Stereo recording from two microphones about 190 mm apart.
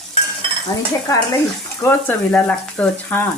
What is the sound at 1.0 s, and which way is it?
Speech, 20° left (ahead or behind).